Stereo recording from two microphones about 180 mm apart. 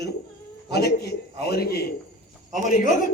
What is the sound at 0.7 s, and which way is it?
A man's voice, 65° left (ahead or behind).